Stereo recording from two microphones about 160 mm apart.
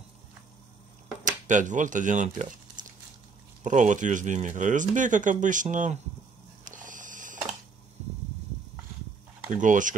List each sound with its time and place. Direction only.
1.5 s speech: 50° right (ahead or behind)
6.6 s a sound: 55° right (ahead or behind)
9.5 s speech: 55° right (ahead or behind)